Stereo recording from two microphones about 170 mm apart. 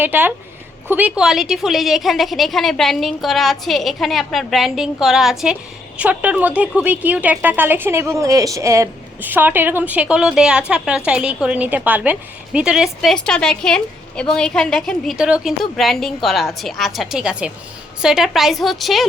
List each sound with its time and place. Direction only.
0.0 s a woman's voice: 10° right (ahead or behind)